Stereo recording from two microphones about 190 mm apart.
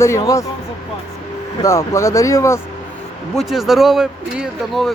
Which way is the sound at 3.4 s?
Centre (ahead or behind).